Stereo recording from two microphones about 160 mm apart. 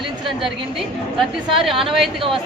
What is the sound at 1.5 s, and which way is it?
Speech, centre (ahead or behind).